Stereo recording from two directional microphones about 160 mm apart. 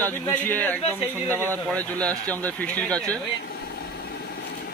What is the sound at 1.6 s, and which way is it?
A woman's voice, 10° left (ahead or behind).